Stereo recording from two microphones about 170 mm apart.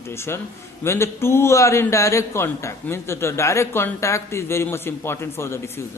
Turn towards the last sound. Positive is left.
turn(degrees=15)  # may be behind; listen again after turning